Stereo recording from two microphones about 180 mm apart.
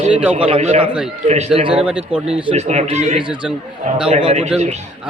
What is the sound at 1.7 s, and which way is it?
Speech, 5° right (ahead or behind).